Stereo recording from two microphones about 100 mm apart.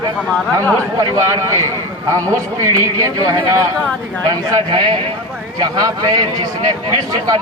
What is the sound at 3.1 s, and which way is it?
Speech, 40° right (ahead or behind).